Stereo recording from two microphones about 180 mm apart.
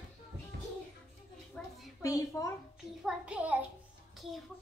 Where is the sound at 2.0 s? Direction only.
20° left (ahead or behind).